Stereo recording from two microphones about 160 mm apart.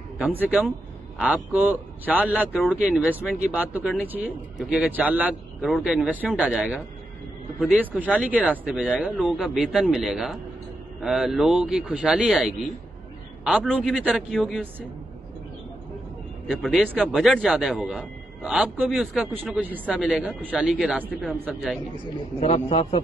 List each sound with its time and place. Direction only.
0.2 s a man's voice: 10° right (ahead or behind)
13.4 s a sound: 5° right (ahead or behind)
13.7 s a man's voice: centre (ahead or behind)
16.4 s a man's voice: centre (ahead or behind)
22.4 s a man's voice: 45° left (ahead or behind)